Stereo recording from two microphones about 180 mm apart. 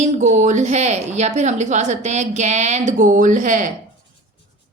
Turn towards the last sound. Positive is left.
turn(degrees=-45)  # may be behind; listen again after turning